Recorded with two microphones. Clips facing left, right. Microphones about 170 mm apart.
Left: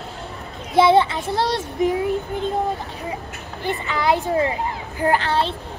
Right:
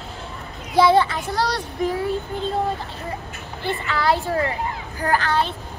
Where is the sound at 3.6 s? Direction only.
20° left (ahead or behind).